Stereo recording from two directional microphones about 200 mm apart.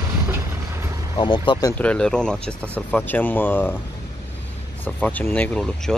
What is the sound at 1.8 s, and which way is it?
Speech, 5° left (ahead or behind).